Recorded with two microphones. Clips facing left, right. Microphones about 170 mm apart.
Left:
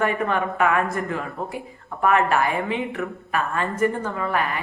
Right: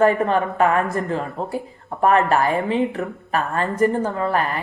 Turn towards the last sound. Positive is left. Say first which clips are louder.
# right 3 dB
turn(degrees=-35)  # may be behind; listen again after turning